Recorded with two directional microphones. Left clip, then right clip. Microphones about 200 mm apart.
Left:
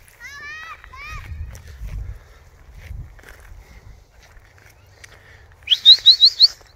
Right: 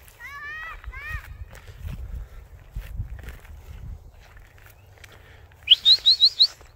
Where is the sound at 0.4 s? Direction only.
50° left (ahead or behind).